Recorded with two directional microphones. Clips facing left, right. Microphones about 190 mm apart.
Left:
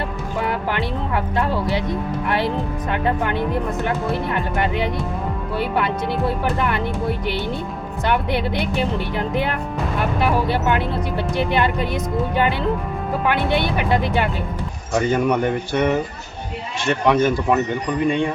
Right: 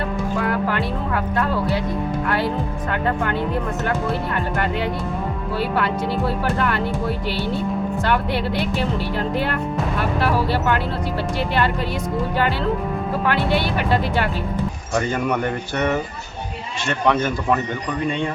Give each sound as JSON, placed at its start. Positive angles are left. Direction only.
{"t": 0.4, "sound": "speech", "side_deg": 20}
{"t": 5.5, "sound": "speech", "side_deg": 20}
{"t": 8.0, "sound": "speech", "side_deg": 20}
{"t": 13.2, "sound": "speech", "side_deg": 20}
{"t": 16.9, "sound": "speech", "side_deg": 15}